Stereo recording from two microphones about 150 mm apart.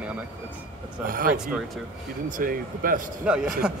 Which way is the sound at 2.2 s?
65° right (ahead or behind).